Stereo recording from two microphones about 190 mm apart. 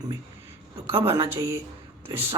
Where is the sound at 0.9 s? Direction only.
30° right (ahead or behind).